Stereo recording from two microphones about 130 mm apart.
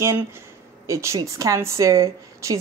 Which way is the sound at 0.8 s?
20° right (ahead or behind).